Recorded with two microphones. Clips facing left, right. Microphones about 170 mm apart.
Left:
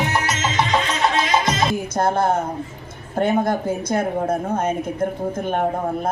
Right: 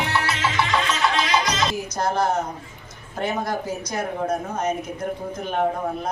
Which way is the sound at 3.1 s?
55° left (ahead or behind).